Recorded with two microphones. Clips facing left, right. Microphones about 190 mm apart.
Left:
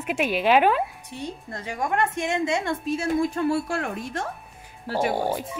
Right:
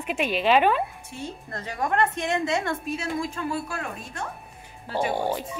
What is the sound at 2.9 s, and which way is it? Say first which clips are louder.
A woman's voice: left 6 dB; 65° left (ahead or behind).